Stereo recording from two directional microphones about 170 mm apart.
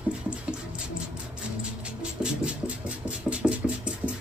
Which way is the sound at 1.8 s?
5° right (ahead or behind).